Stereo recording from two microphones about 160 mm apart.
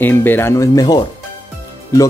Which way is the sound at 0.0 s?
10° left (ahead or behind).